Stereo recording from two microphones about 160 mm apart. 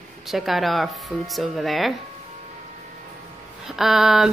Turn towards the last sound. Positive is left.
turn(degrees=0)  # may be behind; listen again after turning